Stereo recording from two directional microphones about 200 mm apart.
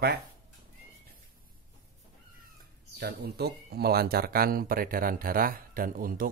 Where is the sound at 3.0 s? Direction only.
55° right (ahead or behind).